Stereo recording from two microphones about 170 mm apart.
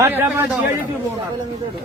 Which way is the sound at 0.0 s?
15° right (ahead or behind).